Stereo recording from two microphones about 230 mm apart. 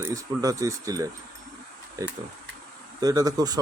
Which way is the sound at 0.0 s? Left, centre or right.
Centre.